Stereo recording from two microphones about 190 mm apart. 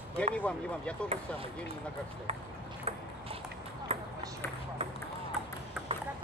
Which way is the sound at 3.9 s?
30° right (ahead or behind).